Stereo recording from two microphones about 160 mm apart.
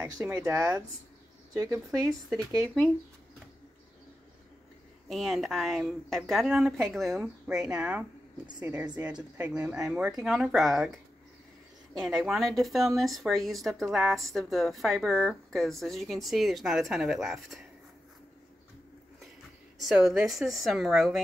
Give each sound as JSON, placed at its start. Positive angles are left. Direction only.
{"t": 0.0, "sound": "speech", "side_deg": -15}
{"t": 5.0, "sound": "speech", "side_deg": 0}
{"t": 12.0, "sound": "speech", "side_deg": 0}
{"t": 19.8, "sound": "speech", "side_deg": 0}